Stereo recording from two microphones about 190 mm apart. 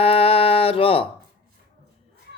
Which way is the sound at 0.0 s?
30° left (ahead or behind).